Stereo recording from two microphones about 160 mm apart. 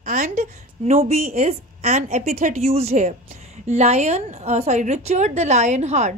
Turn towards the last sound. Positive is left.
turn(degrees=-45)  # may be behind; listen again after turning